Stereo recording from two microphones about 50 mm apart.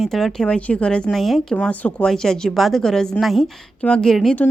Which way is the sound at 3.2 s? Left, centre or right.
Centre.